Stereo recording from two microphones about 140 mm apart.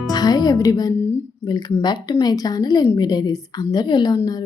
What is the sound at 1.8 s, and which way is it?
A woman's voice, 30° left (ahead or behind).